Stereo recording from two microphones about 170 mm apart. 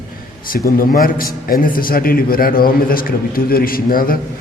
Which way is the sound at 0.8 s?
55° left (ahead or behind).